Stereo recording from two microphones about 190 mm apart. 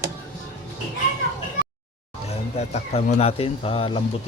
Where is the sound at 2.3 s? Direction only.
35° left (ahead or behind).